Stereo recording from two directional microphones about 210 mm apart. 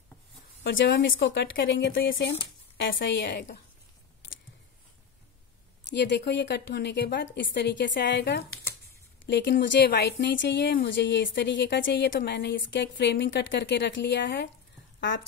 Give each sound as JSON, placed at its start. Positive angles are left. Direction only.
{"t": 0.7, "sound": "speech", "side_deg": 60}
{"t": 5.9, "sound": "speech", "side_deg": 55}